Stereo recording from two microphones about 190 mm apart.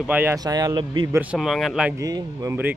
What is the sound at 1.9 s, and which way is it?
Speech, 20° right (ahead or behind).